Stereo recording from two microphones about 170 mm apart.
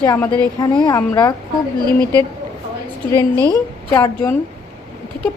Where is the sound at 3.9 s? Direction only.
15° left (ahead or behind).